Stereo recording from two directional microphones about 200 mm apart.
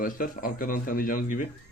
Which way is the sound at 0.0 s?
45° left (ahead or behind).